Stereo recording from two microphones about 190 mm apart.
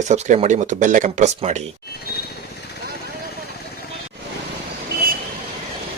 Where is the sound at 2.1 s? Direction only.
55° left (ahead or behind).